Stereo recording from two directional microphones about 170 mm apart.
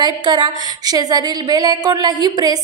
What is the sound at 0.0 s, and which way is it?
A woman's voice, 25° right (ahead or behind).